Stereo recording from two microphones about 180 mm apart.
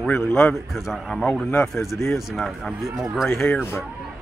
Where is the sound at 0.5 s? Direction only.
Centre (ahead or behind).